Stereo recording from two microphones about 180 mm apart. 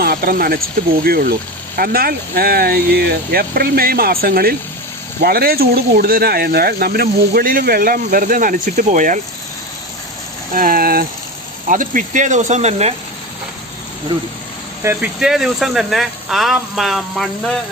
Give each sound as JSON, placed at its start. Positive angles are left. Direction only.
{"t": 0.0, "sound": "speech", "side_deg": -55}
{"t": 10.5, "sound": "speech", "side_deg": -50}
{"t": 14.8, "sound": "speech", "side_deg": -5}